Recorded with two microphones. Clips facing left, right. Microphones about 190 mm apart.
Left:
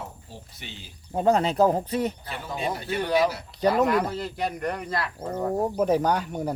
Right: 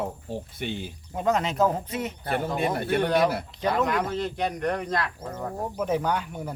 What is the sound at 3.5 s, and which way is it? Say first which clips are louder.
Speech: left 5 dB; 40° left (ahead or behind).